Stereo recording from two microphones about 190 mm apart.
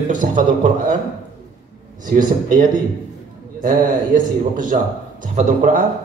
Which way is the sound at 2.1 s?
45° right (ahead or behind).